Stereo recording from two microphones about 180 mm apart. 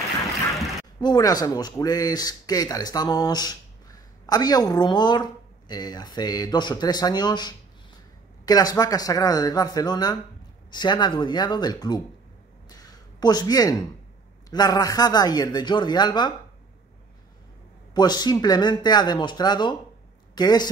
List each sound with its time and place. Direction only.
1.0 s speech: 20° left (ahead or behind)
12.6 s a sound: 20° left (ahead or behind)
14.5 s speech: 20° left (ahead or behind)
17.9 s speech: 25° left (ahead or behind)